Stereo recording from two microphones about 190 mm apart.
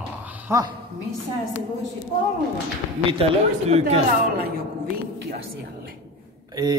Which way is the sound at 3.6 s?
35° right (ahead or behind).